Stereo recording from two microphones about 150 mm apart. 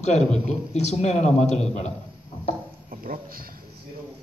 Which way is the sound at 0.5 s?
50° left (ahead or behind).